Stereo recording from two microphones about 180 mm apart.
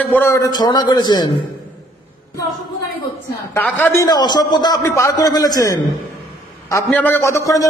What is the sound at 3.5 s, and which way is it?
A man's voice, 10° left (ahead or behind).